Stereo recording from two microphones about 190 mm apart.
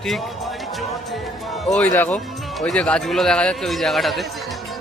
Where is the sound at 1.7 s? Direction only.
10° left (ahead or behind).